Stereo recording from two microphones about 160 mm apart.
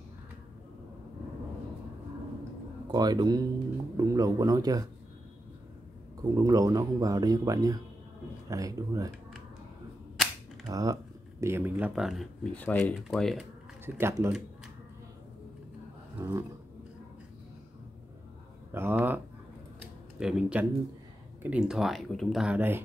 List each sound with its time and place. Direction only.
2.9 s speech: 25° right (ahead or behind)
6.2 s speech: 20° right (ahead or behind)
10.7 s speech: 20° right (ahead or behind); by 12.3 s centre (ahead or behind)
12.5 s speech: 10° left (ahead or behind)
13.8 s speech: 15° right (ahead or behind)
16.2 s speech: 15° right (ahead or behind)
18.7 s speech: 15° right (ahead or behind)